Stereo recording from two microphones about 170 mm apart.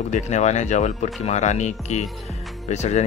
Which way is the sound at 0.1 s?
40° left (ahead or behind).